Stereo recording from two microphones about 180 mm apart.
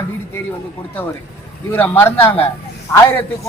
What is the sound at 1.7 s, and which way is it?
Speech, 10° left (ahead or behind).